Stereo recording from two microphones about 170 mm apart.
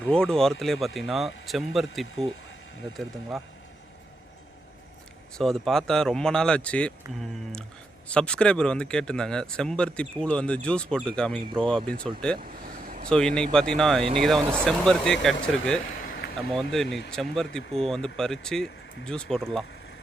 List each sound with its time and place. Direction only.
0.0 s speech: 5° left (ahead or behind)
5.4 s speech: centre (ahead or behind)
8.0 s speech: 5° left (ahead or behind)
12.4 s vehicle: 55° right (ahead or behind)
13.1 s speech: 5° left (ahead or behind)
16.5 s speech: centre (ahead or behind)